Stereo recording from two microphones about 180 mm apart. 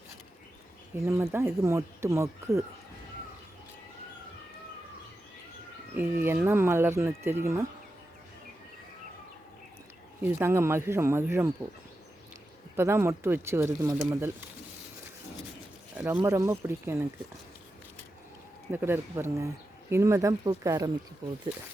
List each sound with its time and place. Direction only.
1.0 s speech: 15° right (ahead or behind)
6.2 s speech: 10° right (ahead or behind)
10.2 s speech: 10° right (ahead or behind)
12.7 s speech: 15° right (ahead or behind)
16.0 s speech: 10° right (ahead or behind)
18.7 s speech: 10° right (ahead or behind)